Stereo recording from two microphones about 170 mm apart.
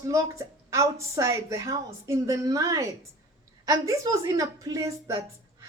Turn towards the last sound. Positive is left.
turn(degrees=-20)  # may be behind; listen again after turning